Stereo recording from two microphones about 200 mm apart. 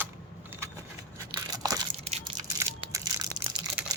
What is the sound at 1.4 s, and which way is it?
Crumpling, 20° right (ahead or behind).